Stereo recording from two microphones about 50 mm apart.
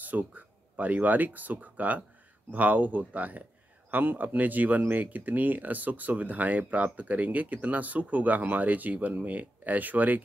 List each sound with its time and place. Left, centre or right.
0.0 s speech: right